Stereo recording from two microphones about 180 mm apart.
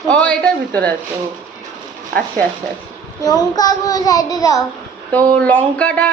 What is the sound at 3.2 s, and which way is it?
Child singing, 20° left (ahead or behind).